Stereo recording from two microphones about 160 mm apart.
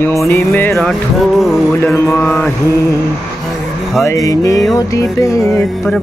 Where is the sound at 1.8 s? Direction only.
15° left (ahead or behind).